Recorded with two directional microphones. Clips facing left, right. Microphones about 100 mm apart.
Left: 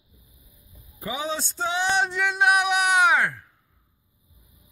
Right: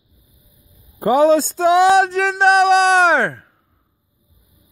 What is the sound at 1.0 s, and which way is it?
Speech, 75° right (ahead or behind).